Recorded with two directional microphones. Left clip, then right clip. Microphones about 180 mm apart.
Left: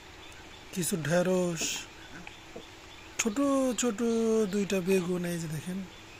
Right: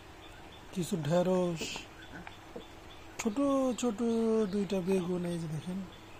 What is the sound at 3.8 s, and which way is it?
Speech, 15° left (ahead or behind).